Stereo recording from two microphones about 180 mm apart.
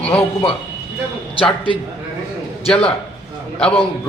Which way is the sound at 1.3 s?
30° left (ahead or behind).